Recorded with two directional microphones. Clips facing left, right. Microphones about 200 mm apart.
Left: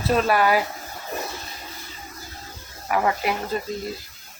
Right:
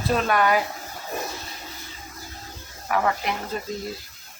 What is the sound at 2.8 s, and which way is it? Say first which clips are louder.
Speech: left 2 dB; 10° left (ahead or behind).